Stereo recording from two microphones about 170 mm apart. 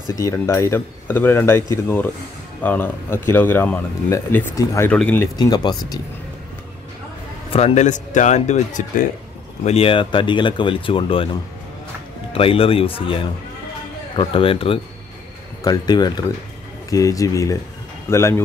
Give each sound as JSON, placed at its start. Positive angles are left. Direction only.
{"t": 0.1, "sound": "speech", "side_deg": 15}
{"t": 5.3, "sound": "speech", "side_deg": 25}
{"t": 7.5, "sound": "speech", "side_deg": 40}
{"t": 9.7, "sound": "speech", "side_deg": 35}
{"t": 12.3, "sound": "speech", "side_deg": 35}